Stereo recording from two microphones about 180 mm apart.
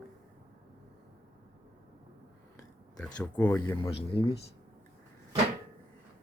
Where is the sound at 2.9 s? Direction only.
5° left (ahead or behind).